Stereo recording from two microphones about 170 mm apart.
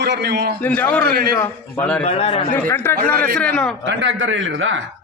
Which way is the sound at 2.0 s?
40° left (ahead or behind).